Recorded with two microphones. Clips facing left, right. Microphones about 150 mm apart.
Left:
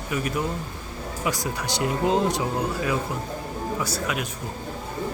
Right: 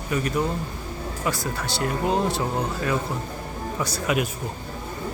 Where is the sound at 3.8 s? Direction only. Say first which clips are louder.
Right 7 dB; centre (ahead or behind).